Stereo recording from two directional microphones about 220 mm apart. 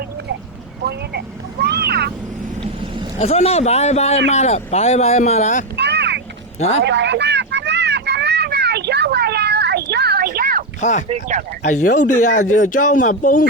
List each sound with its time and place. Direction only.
0.9 s vehicle: 45° right (ahead or behind)
3.2 s speech: 30° left (ahead or behind)
5.7 s vehicle: 50° right (ahead or behind)
6.8 s a sound: 50° right (ahead or behind)
10.8 s speech: 35° left (ahead or behind)
11.1 s speech: 30° right (ahead or behind)
11.6 s speech: 35° left (ahead or behind)